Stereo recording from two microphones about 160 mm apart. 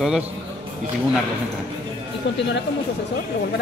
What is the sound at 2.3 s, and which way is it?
Speech, 90° left.